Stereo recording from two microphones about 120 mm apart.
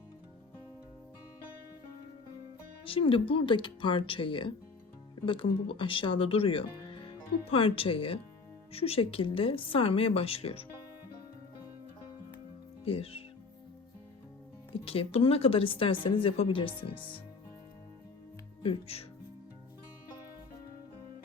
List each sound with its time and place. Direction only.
2.8 s speech: 50° left (ahead or behind)
12.8 s speech: 55° left (ahead or behind)
14.7 s speech: 50° left (ahead or behind)
18.6 s speech: 55° left (ahead or behind)